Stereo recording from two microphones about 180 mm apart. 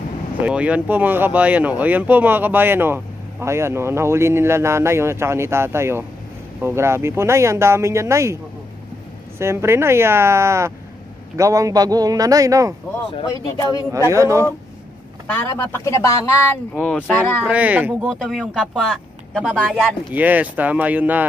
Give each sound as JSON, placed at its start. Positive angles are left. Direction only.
{"t": 0.4, "sound": "speech", "side_deg": -5}
{"t": 9.4, "sound": "a man's voice", "side_deg": -15}
{"t": 13.1, "sound": "speech", "side_deg": 25}
{"t": 13.9, "sound": "speech", "side_deg": -15}
{"t": 15.2, "sound": "speech", "side_deg": 10}
{"t": 17.5, "sound": "speech", "side_deg": -10}